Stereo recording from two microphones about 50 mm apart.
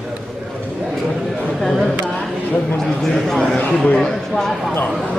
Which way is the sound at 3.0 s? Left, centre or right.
Centre.